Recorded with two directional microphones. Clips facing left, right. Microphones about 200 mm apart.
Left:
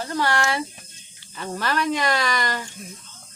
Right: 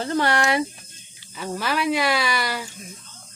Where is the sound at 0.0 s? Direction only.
25° right (ahead or behind).